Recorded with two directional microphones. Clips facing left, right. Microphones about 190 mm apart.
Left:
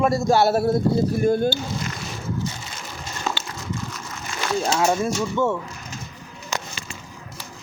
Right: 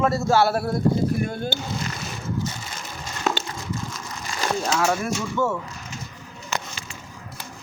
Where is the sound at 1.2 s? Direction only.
40° left (ahead or behind).